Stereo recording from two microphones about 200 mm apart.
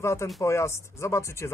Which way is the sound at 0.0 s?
15° left (ahead or behind).